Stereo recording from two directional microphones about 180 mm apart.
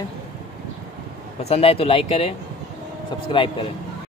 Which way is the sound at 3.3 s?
30° left (ahead or behind).